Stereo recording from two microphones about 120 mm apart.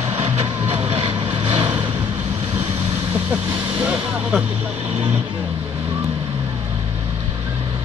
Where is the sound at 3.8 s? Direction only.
10° right (ahead or behind).